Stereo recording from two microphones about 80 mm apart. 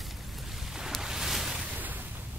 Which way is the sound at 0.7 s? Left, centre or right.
Centre.